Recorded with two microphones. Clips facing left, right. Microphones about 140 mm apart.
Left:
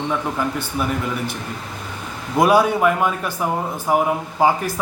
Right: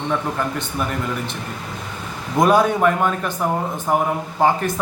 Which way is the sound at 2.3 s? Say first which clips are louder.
Even; 10° left (ahead or behind).